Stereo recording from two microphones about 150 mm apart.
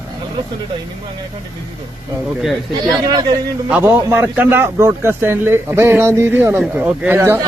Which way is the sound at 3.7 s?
15° right (ahead or behind).